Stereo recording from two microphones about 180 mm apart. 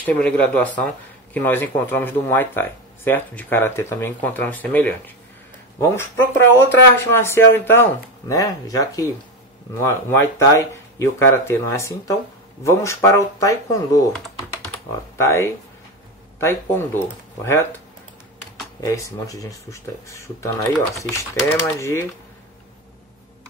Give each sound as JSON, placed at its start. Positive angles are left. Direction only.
{"t": 0.0, "sound": "speech", "side_deg": 10}
{"t": 15.1, "sound": "speech", "side_deg": 15}